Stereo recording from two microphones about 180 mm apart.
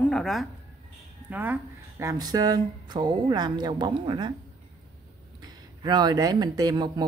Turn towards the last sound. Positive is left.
turn(degrees=-20)  # may be behind; listen again after turning